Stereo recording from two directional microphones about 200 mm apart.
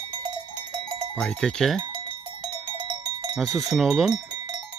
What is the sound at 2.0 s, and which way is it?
Cowbell, 25° right (ahead or behind).